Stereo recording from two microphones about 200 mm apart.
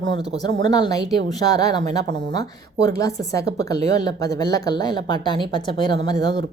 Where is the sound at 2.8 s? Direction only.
15° left (ahead or behind).